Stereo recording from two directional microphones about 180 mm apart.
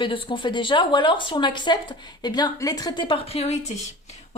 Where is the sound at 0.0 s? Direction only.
30° left (ahead or behind).